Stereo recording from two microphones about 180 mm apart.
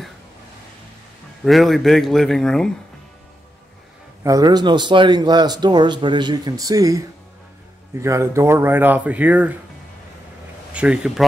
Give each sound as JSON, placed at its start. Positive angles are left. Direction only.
{"t": 1.4, "sound": "speech", "side_deg": 0}
{"t": 4.2, "sound": "speech", "side_deg": -20}
{"t": 10.7, "sound": "speech", "side_deg": -5}